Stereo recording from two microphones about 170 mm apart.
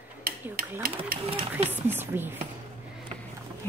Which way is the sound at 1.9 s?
10° right (ahead or behind).